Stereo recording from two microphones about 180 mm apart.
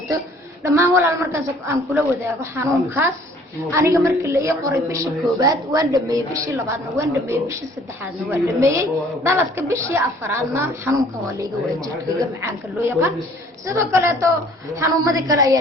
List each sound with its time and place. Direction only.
0.6 s a woman's voice: 15° right (ahead or behind)